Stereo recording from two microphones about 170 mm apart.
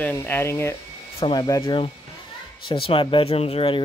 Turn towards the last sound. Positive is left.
turn(degrees=35)  # may be behind; listen again after turning